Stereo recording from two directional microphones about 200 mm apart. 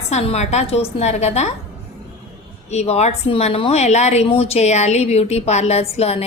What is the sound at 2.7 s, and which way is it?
A woman's voice, 35° left (ahead or behind).